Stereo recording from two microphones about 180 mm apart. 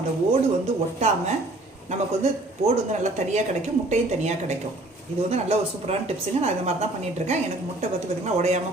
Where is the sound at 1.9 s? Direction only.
35° right (ahead or behind).